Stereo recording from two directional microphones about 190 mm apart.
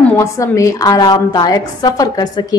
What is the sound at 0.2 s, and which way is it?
A woman's voice, 15° left (ahead or behind).